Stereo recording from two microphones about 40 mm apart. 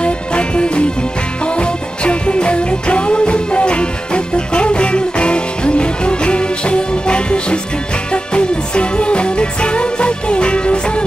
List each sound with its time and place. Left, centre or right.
0.0 s music: left